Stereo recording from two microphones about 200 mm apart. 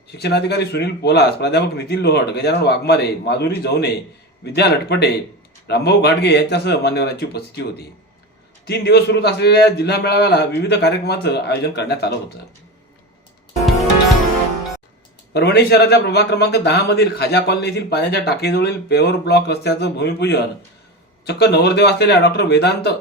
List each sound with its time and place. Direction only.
0.1 s speech: 55° left (ahead or behind)
15.3 s speech: 55° left (ahead or behind)